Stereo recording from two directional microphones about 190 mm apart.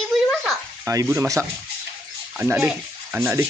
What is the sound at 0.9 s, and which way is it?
Speech, 15° right (ahead or behind).